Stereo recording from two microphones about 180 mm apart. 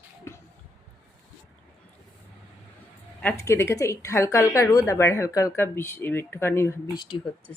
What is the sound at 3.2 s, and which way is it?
Speech, 15° left (ahead or behind).